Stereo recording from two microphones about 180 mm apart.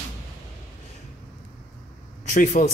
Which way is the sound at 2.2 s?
45° left (ahead or behind).